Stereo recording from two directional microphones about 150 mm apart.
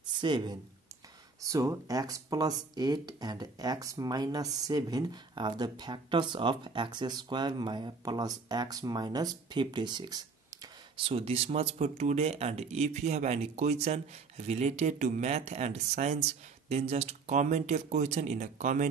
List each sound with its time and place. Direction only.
0.0 s speech: 30° right (ahead or behind); by 18.9 s 55° right (ahead or behind)